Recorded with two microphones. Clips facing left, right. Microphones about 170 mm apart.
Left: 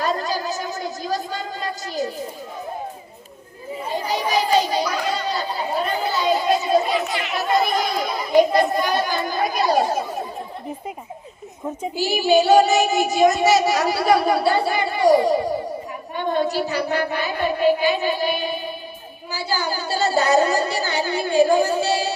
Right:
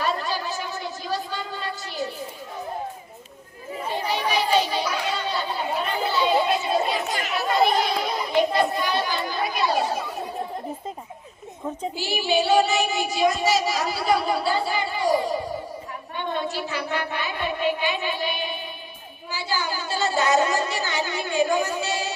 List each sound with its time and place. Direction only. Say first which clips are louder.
0.0 s a sound: left 3 dB; 40° left (ahead or behind)
3.9 s children playing: left 3 dB; 40° left (ahead or behind)
5.0 s chatter: left 3 dB; 40° left (ahead or behind)
7.3 s a sound: even; 40° left (ahead or behind)
8.4 s children playing: left 6 dB; 45° left (ahead or behind)
11.9 s child singing: left 7 dB; 40° left (ahead or behind)
13.3 s a woman's voice: left 5 dB; 65° left (ahead or behind)
16.1 s a woman's voice: left 7 dB; 40° left (ahead or behind)